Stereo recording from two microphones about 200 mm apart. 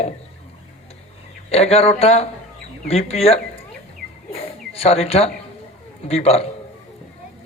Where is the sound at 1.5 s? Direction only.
30° left (ahead or behind).